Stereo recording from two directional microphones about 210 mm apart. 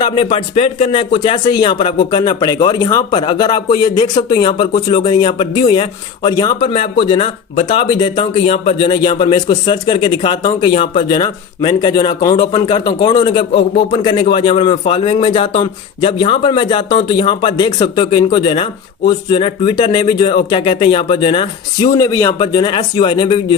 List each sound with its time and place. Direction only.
0.0 s a man's voice: 25° left (ahead or behind)